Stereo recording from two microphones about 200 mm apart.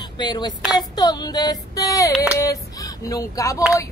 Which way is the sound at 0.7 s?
20° left (ahead or behind).